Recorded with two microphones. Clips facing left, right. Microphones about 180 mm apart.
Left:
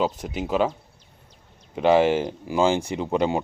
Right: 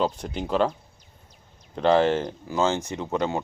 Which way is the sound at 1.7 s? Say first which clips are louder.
Left 2 dB; 10° left (ahead or behind).